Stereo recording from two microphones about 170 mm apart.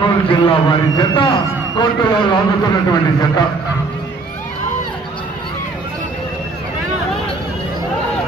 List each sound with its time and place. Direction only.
0.0 s a man's voice: 30° left (ahead or behind)